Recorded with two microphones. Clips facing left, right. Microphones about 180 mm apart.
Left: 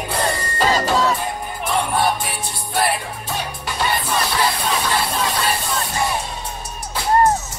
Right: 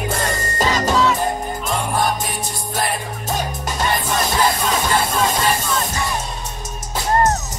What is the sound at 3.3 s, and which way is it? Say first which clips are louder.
Music: right 4 dB; 45° right (ahead or behind).